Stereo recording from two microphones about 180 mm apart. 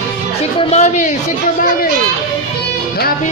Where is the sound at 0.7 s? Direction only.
40° left (ahead or behind).